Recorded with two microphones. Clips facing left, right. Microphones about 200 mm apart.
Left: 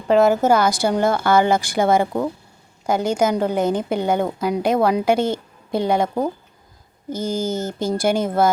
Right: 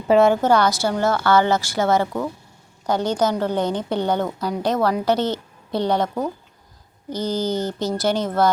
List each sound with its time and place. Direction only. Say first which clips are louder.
0.1 s a woman's voice: even; centre (ahead or behind)
7.1 s speech: even; 50° left (ahead or behind)
7.9 s a woman's voice: left 3 dB; 10° left (ahead or behind)